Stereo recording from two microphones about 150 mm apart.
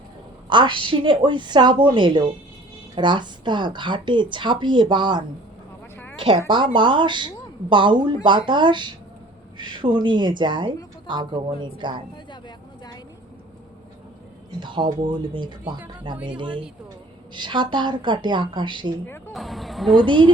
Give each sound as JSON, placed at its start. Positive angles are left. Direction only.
{"t": 0.5, "sound": "a woman's voice", "side_deg": -35}
{"t": 14.6, "sound": "speech", "side_deg": -30}
{"t": 19.3, "sound": "a sound", "side_deg": 0}
{"t": 20.1, "sound": "speech", "side_deg": -30}